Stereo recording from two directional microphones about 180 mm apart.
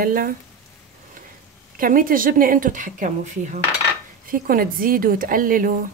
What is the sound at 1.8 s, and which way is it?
A woman's voice, 50° right (ahead or behind).